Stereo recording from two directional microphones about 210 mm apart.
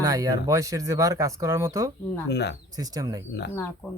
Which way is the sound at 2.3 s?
50° left (ahead or behind).